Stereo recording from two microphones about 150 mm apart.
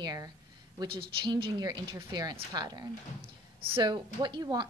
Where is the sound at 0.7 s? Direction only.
35° right (ahead or behind).